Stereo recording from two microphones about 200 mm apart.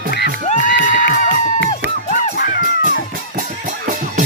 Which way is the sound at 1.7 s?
35° left (ahead or behind).